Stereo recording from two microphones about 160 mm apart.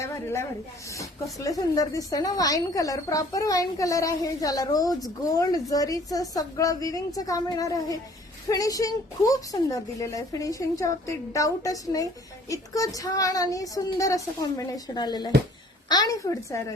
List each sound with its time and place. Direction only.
0.0 s a woman's voice: 15° left (ahead or behind)